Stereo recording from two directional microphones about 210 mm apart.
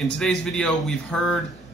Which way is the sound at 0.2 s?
Centre (ahead or behind).